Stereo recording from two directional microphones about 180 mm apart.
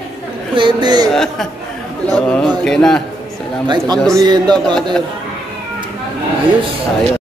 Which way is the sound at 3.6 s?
25° right (ahead or behind).